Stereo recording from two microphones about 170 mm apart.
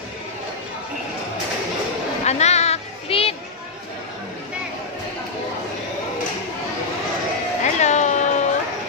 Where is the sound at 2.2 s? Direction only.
40° left (ahead or behind).